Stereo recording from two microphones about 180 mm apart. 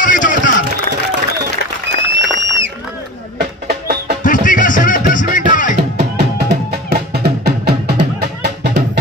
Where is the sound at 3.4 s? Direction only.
60° right (ahead or behind).